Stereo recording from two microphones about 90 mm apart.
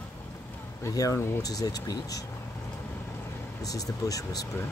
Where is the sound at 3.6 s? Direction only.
40° left (ahead or behind).